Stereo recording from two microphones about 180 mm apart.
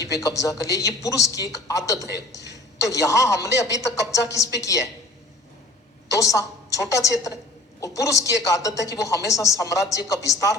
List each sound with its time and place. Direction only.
0.0 s a woman's voice: 20° left (ahead or behind)
6.1 s a woman's voice: 15° left (ahead or behind)